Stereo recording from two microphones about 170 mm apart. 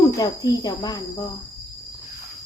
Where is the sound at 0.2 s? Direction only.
25° left (ahead or behind).